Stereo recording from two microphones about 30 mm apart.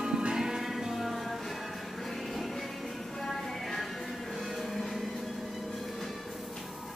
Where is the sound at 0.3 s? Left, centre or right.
Centre.